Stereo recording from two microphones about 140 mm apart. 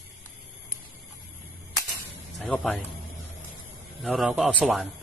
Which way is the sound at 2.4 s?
5° left (ahead or behind).